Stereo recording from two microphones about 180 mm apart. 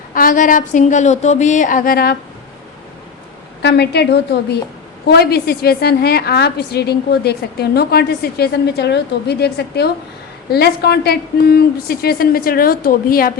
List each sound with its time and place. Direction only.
0.1 s a woman's voice: 50° left (ahead or behind)
3.6 s a woman's voice: 70° left (ahead or behind); by 13.3 s 55° left (ahead or behind)